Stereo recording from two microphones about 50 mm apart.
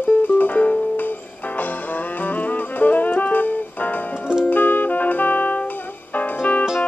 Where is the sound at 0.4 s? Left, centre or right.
Left.